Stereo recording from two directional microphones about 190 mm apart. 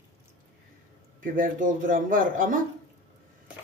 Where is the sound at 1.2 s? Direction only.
45° right (ahead or behind).